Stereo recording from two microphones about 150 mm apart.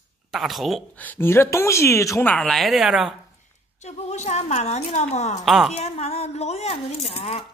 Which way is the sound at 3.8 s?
50° left (ahead or behind).